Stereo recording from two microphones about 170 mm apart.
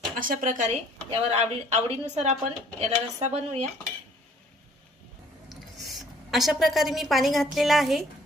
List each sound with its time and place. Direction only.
0.2 s a woman's voice: 50° right (ahead or behind)
5.5 s a woman's voice: centre (ahead or behind)